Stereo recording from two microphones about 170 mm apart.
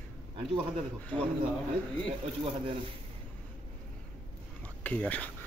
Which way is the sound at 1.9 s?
35° right (ahead or behind).